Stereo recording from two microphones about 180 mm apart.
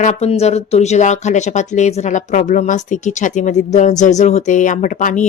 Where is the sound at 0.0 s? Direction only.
40° left (ahead or behind).